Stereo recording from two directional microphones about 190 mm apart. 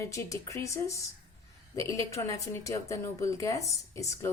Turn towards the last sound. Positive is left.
turn(degrees=15)  # may be behind; listen again after turning